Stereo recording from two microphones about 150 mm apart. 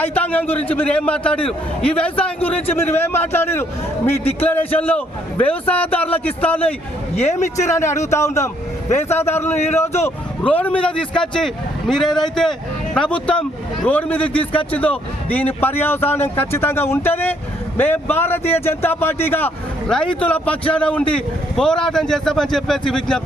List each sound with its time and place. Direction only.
0.0 s a man's voice: 10° left (ahead or behind)
7.2 s a man's voice: 50° left (ahead or behind)
7.8 s a man's voice: 20° left (ahead or behind)